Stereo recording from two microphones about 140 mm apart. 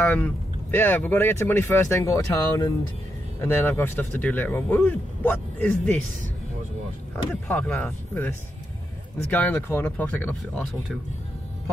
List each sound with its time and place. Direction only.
0.0 s speech: 10° left (ahead or behind)
7.4 s speech: 10° left (ahead or behind)